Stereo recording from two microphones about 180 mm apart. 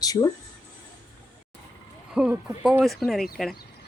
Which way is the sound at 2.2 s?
5° right (ahead or behind).